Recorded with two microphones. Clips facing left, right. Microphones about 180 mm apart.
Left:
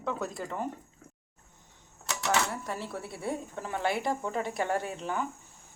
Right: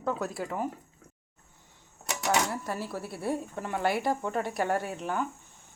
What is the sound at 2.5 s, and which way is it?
A woman's voice, 5° right (ahead or behind).